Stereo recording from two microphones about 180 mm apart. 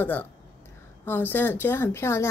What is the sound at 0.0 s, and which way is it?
A child's voice, 10° left (ahead or behind).